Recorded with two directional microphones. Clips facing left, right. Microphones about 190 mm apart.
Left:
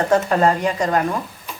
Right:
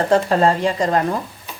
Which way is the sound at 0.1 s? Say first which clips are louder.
Right 1 dB; 30° right (ahead or behind).